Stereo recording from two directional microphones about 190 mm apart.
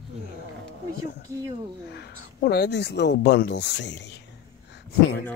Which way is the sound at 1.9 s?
60° left (ahead or behind).